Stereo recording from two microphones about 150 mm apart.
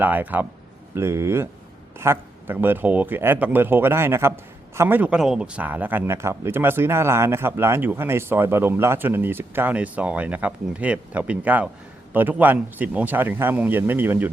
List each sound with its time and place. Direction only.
0.0 s speech: 10° right (ahead or behind)